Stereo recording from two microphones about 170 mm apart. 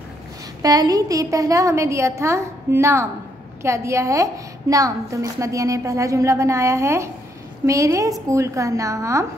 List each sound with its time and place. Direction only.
0.6 s a woman's voice: 20° right (ahead or behind)